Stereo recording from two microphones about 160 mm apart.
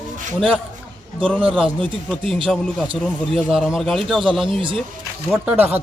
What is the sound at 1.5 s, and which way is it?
Speech, 5° left (ahead or behind).